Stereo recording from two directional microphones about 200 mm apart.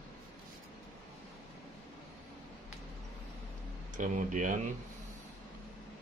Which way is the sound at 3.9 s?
40° right (ahead or behind).